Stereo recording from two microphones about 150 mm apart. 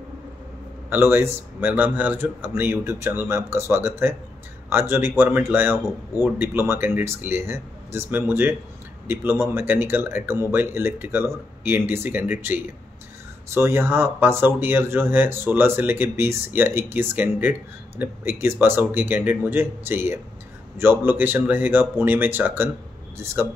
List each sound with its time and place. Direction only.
0.8 s speech: 15° right (ahead or behind)